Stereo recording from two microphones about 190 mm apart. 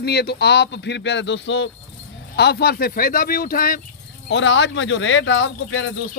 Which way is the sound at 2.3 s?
60° left (ahead or behind).